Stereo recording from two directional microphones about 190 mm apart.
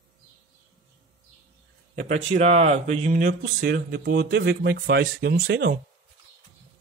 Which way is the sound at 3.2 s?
55° right (ahead or behind).